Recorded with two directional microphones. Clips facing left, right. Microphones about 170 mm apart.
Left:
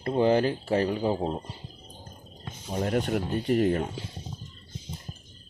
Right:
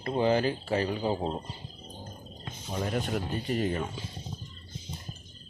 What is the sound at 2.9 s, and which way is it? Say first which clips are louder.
Speech: left 6 dB; 60° left (ahead or behind).